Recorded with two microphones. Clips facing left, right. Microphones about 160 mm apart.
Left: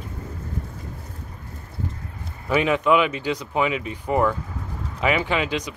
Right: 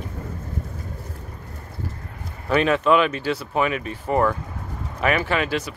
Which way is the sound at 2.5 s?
15° left (ahead or behind).